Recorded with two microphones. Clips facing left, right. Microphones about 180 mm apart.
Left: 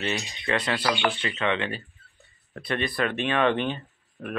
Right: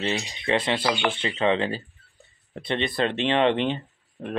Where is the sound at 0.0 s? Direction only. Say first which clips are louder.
Right 2 dB; 25° right (ahead or behind).